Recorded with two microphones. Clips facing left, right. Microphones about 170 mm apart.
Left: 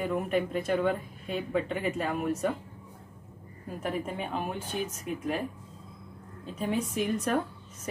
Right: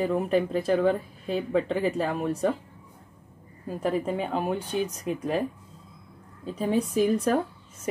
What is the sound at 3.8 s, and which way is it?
A woman's voice, 35° right (ahead or behind).